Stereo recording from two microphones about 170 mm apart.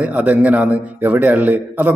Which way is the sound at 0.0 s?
10° right (ahead or behind).